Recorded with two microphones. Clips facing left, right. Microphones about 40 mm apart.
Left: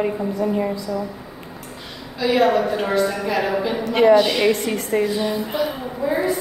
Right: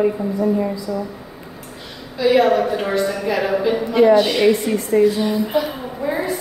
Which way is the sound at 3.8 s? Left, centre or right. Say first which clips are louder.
Right 1 dB; left.